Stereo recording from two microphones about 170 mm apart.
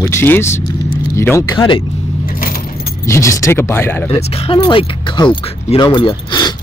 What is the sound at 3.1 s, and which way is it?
Speech, 15° left (ahead or behind).